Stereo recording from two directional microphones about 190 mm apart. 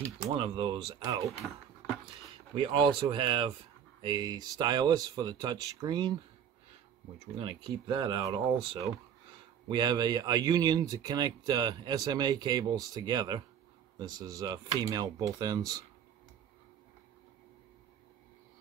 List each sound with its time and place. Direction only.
0.4 s speech: 25° right (ahead or behind)
2.5 s speech: 25° right (ahead or behind)
7.3 s speech: 25° right (ahead or behind)